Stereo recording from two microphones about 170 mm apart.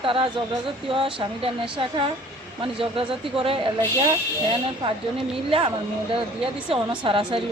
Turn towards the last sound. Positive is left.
turn(degrees=-30)  # may be behind; listen again after turning